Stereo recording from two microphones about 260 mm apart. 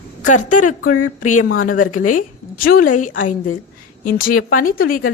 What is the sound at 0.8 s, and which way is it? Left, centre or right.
Speech, left.